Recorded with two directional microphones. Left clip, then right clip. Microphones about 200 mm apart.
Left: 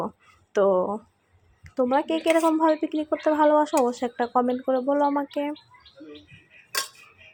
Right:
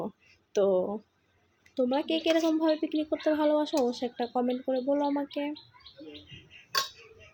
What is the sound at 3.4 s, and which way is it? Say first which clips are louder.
Speech: left 8 dB; 5° right (ahead or behind).